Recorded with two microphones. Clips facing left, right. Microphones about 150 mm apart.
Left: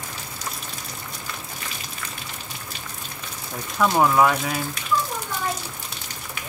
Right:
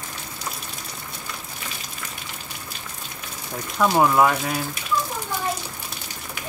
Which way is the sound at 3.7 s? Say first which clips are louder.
Right 1 dB; 5° right (ahead or behind).